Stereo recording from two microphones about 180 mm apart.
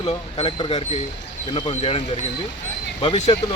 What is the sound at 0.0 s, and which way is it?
Speech, 35° left (ahead or behind).